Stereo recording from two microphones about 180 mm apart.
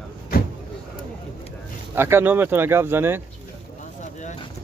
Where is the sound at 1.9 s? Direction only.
15° right (ahead or behind).